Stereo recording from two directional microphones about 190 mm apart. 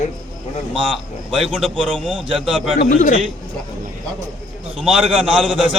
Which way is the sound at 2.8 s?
40° left (ahead or behind).